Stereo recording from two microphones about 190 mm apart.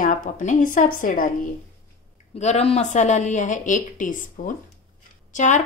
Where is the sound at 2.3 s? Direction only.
35° left (ahead or behind).